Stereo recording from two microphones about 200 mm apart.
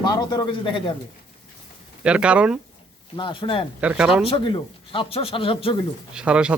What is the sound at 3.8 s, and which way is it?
Speech, 5° right (ahead or behind).